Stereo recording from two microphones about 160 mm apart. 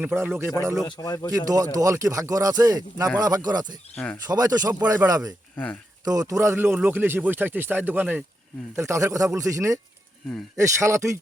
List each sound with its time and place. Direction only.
0.0 s speech: 10° right (ahead or behind)
0.9 s speech: 25° left (ahead or behind)
1.3 s speech: 20° right (ahead or behind)
3.9 s speech: 10° left (ahead or behind)
4.3 s speech: 25° right (ahead or behind)
5.5 s speech: 10° left (ahead or behind)
6.1 s speech: 20° right (ahead or behind)